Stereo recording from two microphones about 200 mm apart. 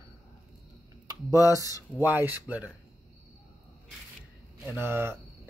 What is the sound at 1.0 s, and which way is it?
Speech, 15° right (ahead or behind).